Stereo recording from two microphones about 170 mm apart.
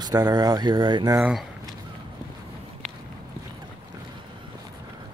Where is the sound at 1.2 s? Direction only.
5° right (ahead or behind).